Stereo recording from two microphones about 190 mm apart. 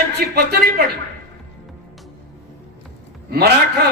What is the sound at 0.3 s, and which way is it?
Speech, 60° right (ahead or behind).